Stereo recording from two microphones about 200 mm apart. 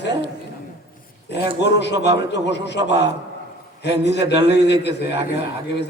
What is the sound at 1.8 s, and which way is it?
A man's voice, 60° left (ahead or behind).